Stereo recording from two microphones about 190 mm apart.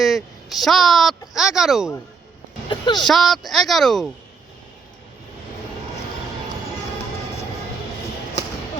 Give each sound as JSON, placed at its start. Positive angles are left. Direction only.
{"t": 0.0, "sound": "speech", "side_deg": 0}
{"t": 2.6, "sound": "vehicle", "side_deg": 25}
{"t": 3.0, "sound": "speech", "side_deg": 0}